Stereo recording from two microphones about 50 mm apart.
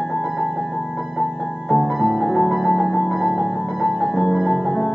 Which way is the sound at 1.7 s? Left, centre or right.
Centre.